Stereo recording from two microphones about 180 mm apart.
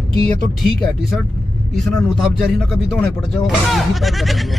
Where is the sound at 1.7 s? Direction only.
Centre (ahead or behind).